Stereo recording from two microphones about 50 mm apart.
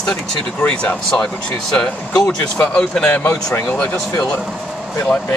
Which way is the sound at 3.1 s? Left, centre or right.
Left.